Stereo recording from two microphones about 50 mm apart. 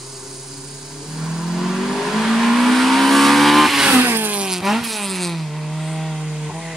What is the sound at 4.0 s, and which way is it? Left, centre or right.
Vehicle, right.